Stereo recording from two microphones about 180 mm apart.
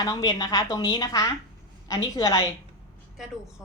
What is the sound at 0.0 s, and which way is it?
A woman's voice, 20° left (ahead or behind).